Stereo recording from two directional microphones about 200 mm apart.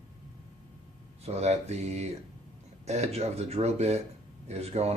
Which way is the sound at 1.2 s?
30° right (ahead or behind).